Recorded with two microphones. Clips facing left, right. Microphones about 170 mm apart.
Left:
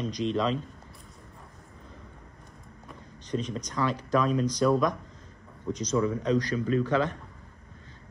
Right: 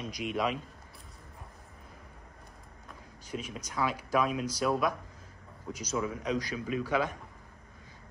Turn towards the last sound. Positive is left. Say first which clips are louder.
# left 5 dB
turn(degrees=-10)  # may be behind; listen again after turning